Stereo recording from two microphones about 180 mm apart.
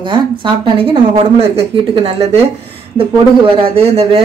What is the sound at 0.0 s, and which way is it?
Speech, 25° right (ahead or behind).